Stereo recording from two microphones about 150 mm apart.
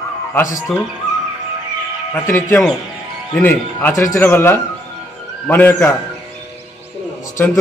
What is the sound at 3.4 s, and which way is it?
Speech, 15° left (ahead or behind).